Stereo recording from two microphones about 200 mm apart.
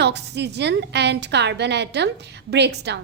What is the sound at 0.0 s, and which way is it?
A woman's voice, 55° right (ahead or behind).